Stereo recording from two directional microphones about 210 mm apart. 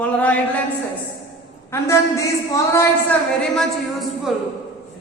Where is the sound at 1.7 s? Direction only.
15° left (ahead or behind).